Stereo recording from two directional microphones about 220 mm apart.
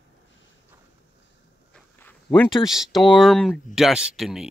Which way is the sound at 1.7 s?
10° left (ahead or behind).